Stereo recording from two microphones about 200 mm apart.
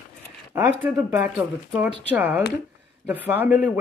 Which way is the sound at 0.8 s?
5° right (ahead or behind).